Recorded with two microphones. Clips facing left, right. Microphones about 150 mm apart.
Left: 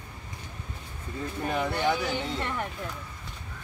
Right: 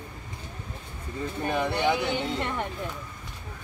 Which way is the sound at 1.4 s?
Centre (ahead or behind).